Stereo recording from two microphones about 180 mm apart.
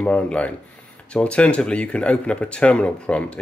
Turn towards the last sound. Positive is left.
turn(degrees=5)  # may be behind; listen again after turning